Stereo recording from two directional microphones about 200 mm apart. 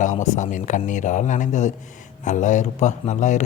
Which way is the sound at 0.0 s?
35° left (ahead or behind).